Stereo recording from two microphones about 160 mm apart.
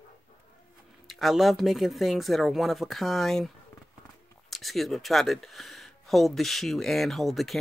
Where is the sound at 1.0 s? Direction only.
Centre (ahead or behind).